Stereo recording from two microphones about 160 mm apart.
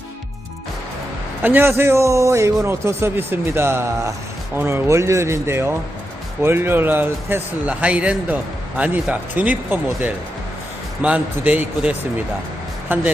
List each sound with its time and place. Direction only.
1.4 s speech: 10° right (ahead or behind)